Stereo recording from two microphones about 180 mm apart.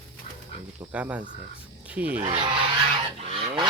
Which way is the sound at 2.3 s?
25° right (ahead or behind).